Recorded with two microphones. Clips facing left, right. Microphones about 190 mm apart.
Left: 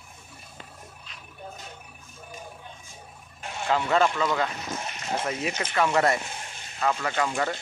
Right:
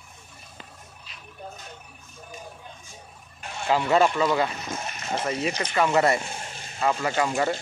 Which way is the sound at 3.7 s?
10° right (ahead or behind).